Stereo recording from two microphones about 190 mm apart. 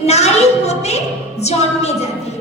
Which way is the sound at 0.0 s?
35° left (ahead or behind).